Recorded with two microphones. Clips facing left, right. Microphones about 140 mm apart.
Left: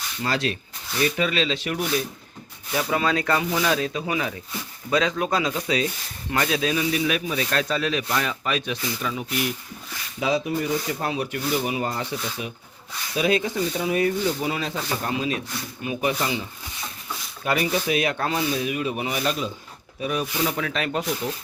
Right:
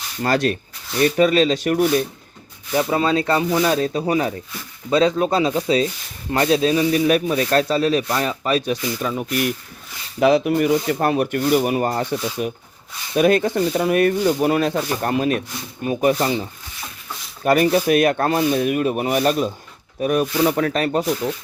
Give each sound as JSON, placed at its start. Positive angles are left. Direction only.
{"t": 0.2, "sound": "speech", "side_deg": -50}
{"t": 0.9, "sound": "speech", "side_deg": -40}
{"t": 2.7, "sound": "speech", "side_deg": -30}
{"t": 10.2, "sound": "speech", "side_deg": -65}
{"t": 15.8, "sound": "speech", "side_deg": -45}
{"t": 17.4, "sound": "speech", "side_deg": -50}